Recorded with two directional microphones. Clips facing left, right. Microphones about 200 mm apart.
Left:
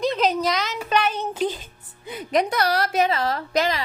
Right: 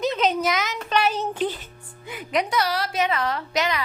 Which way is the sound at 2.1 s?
45° left (ahead or behind).